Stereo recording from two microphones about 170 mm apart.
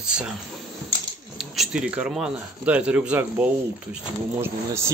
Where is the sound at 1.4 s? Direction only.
Centre (ahead or behind).